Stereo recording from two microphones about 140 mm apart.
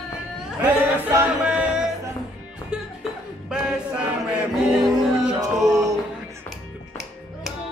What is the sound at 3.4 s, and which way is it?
Choir, 5° right (ahead or behind).